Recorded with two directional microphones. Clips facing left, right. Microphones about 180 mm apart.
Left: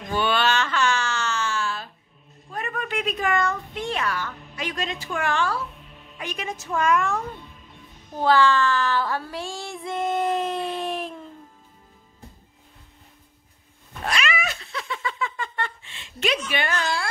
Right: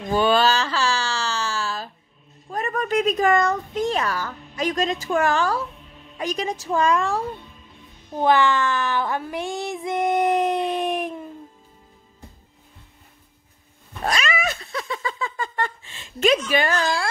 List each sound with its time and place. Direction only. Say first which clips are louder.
0.1 s a sound: right 4 dB; 40° right (ahead or behind)
2.5 s a child's voice: right 6 dB; 40° right (ahead or behind)
8.2 s child singing: even; 20° right (ahead or behind)
14.0 s cat: right 3 dB; 40° right (ahead or behind)